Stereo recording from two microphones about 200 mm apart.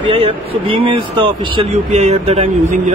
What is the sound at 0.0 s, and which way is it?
A man's voice, 25° right (ahead or behind).